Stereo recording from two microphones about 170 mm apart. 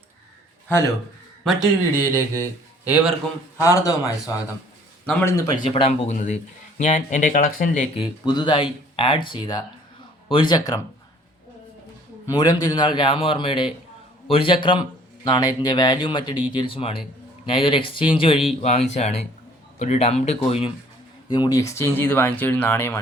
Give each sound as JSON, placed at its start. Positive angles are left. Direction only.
{"t": 1.5, "sound": "speech", "side_deg": -5}
{"t": 2.0, "sound": "speech", "side_deg": -15}
{"t": 3.6, "sound": "speech", "side_deg": 20}
{"t": 5.5, "sound": "speech", "side_deg": 30}
{"t": 7.9, "sound": "speech", "side_deg": 25}
{"t": 12.2, "sound": "speech", "side_deg": 20}
{"t": 18.6, "sound": "speech", "side_deg": 40}